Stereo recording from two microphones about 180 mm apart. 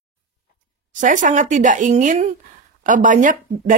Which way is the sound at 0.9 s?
45° right (ahead or behind).